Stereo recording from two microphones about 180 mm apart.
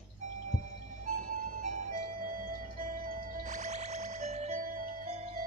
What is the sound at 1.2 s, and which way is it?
Music, 45° right (ahead or behind).